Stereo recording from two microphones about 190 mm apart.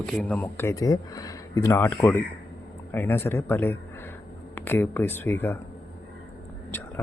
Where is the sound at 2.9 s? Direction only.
10° left (ahead or behind).